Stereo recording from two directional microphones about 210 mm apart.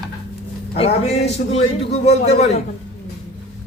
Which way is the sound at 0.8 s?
30° left (ahead or behind).